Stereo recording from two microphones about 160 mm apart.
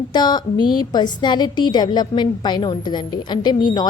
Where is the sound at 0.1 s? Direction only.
25° left (ahead or behind).